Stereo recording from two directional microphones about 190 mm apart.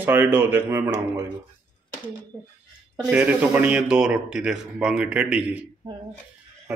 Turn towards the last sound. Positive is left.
turn(degrees=-5)  # may be behind; listen again after turning